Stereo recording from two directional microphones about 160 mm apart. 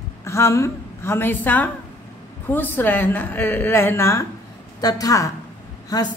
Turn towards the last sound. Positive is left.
turn(degrees=25)  # may be behind; listen again after turning